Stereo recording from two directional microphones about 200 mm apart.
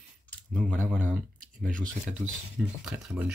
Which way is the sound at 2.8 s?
5° right (ahead or behind).